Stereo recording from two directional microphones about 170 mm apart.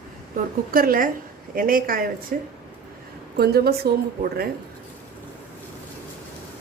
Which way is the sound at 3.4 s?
65° right (ahead or behind).